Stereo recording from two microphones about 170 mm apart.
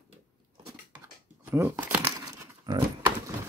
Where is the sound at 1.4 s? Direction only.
15° right (ahead or behind).